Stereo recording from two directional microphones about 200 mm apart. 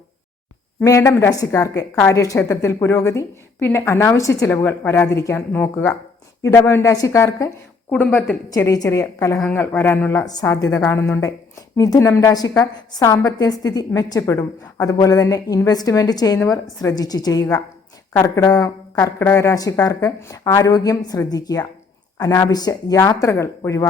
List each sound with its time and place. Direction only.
0.8 s a woman's voice: 15° left (ahead or behind)